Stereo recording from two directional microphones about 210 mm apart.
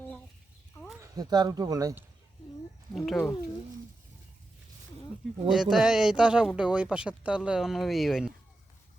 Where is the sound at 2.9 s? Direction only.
Centre (ahead or behind).